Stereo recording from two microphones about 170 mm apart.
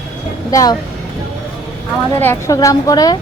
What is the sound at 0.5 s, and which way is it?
Speech, 20° left (ahead or behind).